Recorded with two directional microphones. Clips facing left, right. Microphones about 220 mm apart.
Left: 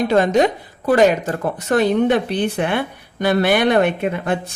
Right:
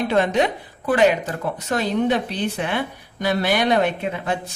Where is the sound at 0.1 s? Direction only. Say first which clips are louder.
Left 4 dB; 40° left (ahead or behind).